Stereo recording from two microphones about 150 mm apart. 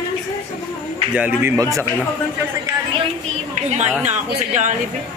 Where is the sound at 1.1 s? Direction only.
10° right (ahead or behind).